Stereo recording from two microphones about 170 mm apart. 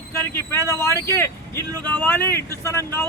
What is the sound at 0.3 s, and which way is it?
Speech, 15° left (ahead or behind).